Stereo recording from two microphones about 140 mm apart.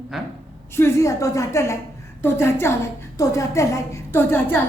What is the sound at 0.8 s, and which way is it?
A woman's voice, 20° left (ahead or behind).